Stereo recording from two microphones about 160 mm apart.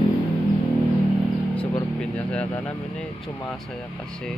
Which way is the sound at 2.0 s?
5° left (ahead or behind).